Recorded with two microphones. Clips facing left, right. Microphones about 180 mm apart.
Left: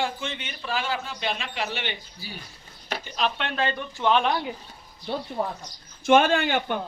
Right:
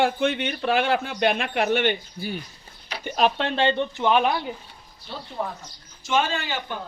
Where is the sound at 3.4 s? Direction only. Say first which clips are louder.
Right 5 dB; 30° right (ahead or behind); by 4.3 s 10° right (ahead or behind).